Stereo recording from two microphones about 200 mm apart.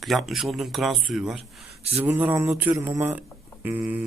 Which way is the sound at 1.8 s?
30° right (ahead or behind).